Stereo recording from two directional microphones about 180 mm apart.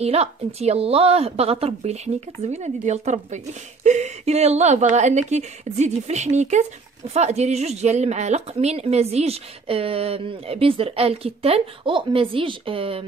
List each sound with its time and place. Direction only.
0.0 s a woman's voice: 35° right (ahead or behind)